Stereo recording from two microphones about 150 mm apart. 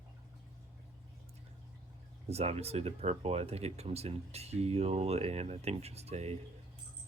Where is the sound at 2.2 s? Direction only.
45° right (ahead or behind).